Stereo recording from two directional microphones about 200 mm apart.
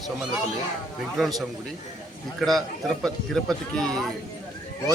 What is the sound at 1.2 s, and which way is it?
Speech, centre (ahead or behind).